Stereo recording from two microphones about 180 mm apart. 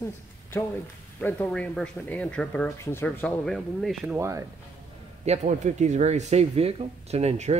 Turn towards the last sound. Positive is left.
turn(degrees=-35)  # may be behind; listen again after turning